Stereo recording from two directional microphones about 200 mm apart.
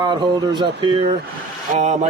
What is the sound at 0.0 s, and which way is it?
Speech, 20° right (ahead or behind).